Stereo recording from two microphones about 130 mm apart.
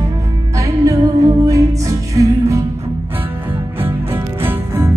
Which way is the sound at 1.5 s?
25° right (ahead or behind).